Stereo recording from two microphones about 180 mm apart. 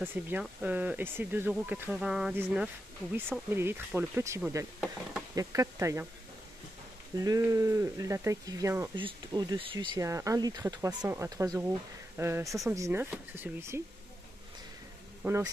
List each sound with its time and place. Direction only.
0.0 s speech: 10° right (ahead or behind)
5.3 s speech: 20° right (ahead or behind)
7.2 s speech: 20° right (ahead or behind)
15.2 s speech: 15° right (ahead or behind)